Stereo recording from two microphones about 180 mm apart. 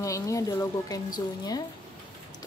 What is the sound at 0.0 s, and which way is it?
A woman's voice, 20° left (ahead or behind).